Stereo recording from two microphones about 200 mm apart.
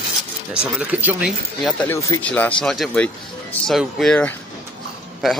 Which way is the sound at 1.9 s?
15° left (ahead or behind).